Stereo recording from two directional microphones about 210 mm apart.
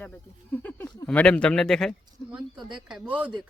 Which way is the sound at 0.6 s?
5° left (ahead or behind).